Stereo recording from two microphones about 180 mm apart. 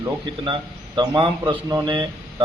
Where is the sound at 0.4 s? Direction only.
25° right (ahead or behind).